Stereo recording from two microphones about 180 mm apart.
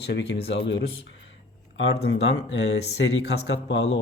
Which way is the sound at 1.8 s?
70° left (ahead or behind).